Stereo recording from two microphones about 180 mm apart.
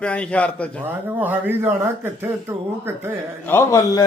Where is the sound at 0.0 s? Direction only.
5° left (ahead or behind).